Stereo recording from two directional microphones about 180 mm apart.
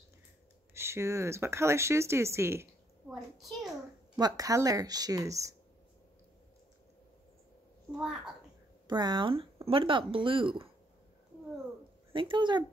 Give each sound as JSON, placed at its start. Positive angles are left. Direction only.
{"t": 0.7, "sound": "speech", "side_deg": -15}
{"t": 3.1, "sound": "a child's voice", "side_deg": 0}
{"t": 4.2, "sound": "speech", "side_deg": -20}
{"t": 7.9, "sound": "a child's voice", "side_deg": -5}
{"t": 8.8, "sound": "speech", "side_deg": -25}
{"t": 12.1, "sound": "speech", "side_deg": -25}